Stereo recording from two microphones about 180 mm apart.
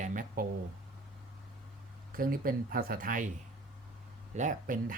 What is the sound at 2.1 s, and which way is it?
Speech, 50° right (ahead or behind).